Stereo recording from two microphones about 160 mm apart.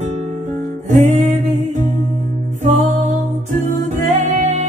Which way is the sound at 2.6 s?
50° right (ahead or behind).